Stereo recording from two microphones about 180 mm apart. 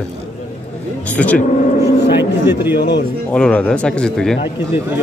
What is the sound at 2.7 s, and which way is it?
Speech, 70° left (ahead or behind).